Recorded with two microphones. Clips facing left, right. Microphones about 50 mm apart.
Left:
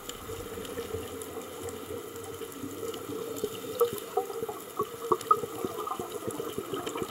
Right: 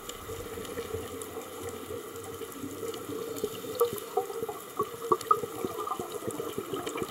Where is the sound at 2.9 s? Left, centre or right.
Left.